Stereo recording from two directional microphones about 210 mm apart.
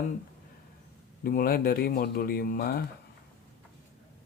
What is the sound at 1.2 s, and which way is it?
Speech, 45° left (ahead or behind).